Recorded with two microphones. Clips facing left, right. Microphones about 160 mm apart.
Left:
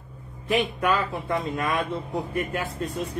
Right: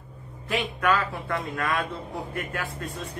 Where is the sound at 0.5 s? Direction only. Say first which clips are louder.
Left 2 dB; 20° left (ahead or behind).